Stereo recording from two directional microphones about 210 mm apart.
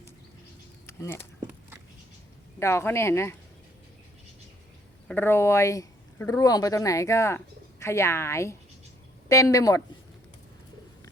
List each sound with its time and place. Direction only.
0.9 s speech: 10° left (ahead or behind)
2.6 s speech: 10° left (ahead or behind)
5.0 s speech: 10° left (ahead or behind)